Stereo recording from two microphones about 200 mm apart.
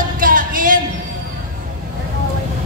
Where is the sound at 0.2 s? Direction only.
45° right (ahead or behind).